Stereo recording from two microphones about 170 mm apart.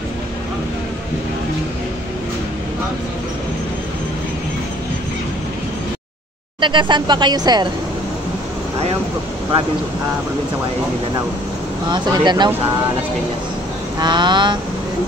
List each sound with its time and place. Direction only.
6.6 s speech: 30° right (ahead or behind)
11.9 s speech: 25° right (ahead or behind)
13.9 s speech: 25° right (ahead or behind)